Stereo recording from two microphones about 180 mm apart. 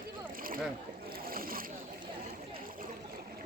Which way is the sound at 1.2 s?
55° right (ahead or behind).